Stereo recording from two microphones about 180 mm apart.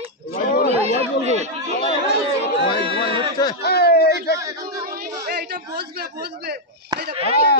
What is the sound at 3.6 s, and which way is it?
Speech, 60° left (ahead or behind).